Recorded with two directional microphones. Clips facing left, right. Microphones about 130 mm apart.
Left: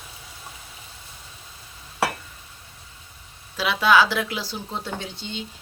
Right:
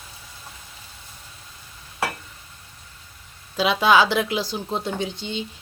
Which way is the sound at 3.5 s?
20° right (ahead or behind).